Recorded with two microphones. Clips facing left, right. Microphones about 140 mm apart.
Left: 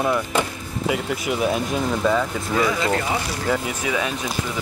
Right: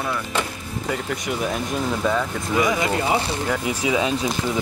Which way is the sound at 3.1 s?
25° right (ahead or behind).